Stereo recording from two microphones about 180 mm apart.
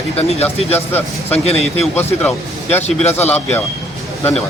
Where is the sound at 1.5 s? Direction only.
35° left (ahead or behind).